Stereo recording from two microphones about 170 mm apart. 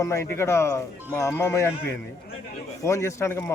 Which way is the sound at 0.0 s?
15° left (ahead or behind).